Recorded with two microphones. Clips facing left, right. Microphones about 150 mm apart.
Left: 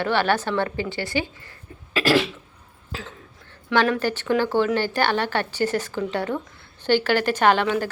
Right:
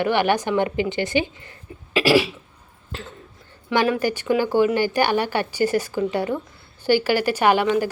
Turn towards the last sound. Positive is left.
turn(degrees=-10)  # may be behind; listen again after turning